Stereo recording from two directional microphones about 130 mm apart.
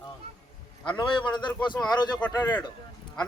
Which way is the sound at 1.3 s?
35° left (ahead or behind).